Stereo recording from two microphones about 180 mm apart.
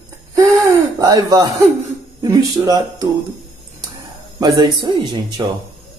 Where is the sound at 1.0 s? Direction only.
20° right (ahead or behind).